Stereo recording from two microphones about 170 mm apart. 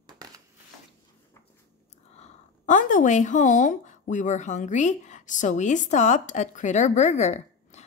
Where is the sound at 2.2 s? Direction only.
50° left (ahead or behind).